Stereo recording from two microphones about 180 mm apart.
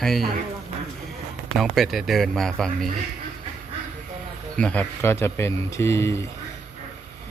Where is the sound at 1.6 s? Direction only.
Centre (ahead or behind).